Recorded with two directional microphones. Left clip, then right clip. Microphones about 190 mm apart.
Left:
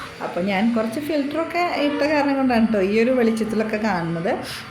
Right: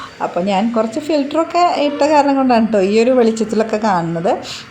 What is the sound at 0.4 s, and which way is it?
A woman's voice, 30° right (ahead or behind).